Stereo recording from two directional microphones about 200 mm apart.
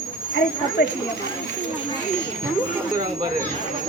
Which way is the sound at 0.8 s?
55° left (ahead or behind).